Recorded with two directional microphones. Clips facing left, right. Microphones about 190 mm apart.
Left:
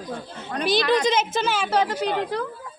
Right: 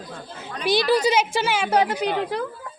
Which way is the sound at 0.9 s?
5° right (ahead or behind).